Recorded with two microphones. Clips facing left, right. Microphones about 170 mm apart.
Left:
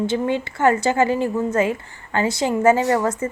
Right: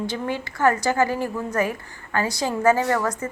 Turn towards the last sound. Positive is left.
turn(degrees=25)  # may be behind; listen again after turning